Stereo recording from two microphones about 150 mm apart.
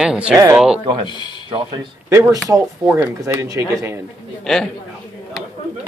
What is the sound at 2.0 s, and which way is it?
Speech, 20° right (ahead or behind).